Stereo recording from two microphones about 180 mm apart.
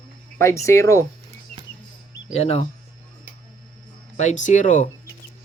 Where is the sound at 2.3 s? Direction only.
35° left (ahead or behind).